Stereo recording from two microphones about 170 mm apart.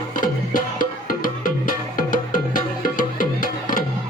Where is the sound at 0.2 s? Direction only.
55° left (ahead or behind).